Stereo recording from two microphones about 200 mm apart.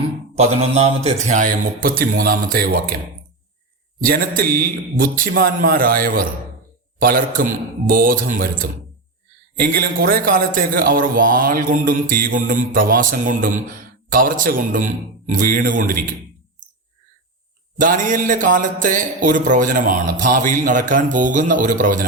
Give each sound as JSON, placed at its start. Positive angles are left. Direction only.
{"t": 0.3, "sound": "speech", "side_deg": -30}
{"t": 4.0, "sound": "a man's voice", "side_deg": -45}
{"t": 17.7, "sound": "speech", "side_deg": -40}